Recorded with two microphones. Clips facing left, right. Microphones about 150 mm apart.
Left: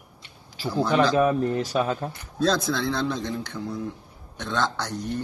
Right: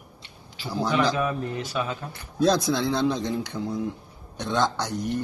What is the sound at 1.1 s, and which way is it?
Speech, 40° left (ahead or behind).